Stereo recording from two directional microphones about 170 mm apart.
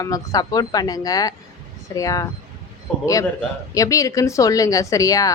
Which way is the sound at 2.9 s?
5° left (ahead or behind).